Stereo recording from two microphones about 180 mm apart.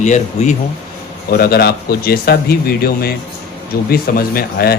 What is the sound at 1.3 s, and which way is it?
Speech, 60° left (ahead or behind).